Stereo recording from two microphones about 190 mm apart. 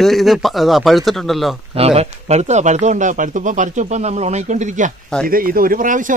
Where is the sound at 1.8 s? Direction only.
35° right (ahead or behind).